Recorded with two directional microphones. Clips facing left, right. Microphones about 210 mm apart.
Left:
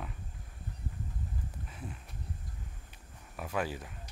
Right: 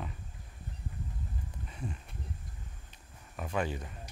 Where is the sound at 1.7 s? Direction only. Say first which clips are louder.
Right 3 dB; 5° left (ahead or behind).